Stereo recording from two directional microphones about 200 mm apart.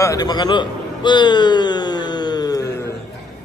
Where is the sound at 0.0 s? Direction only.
20° left (ahead or behind).